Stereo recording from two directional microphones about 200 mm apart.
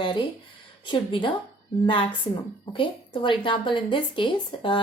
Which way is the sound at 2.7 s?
25° left (ahead or behind).